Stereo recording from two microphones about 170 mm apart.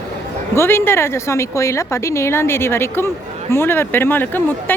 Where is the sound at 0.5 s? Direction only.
15° left (ahead or behind).